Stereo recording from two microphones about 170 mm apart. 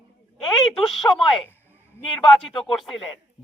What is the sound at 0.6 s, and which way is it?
Speech, centre (ahead or behind).